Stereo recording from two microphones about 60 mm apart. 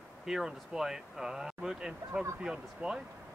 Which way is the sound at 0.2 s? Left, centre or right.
Centre.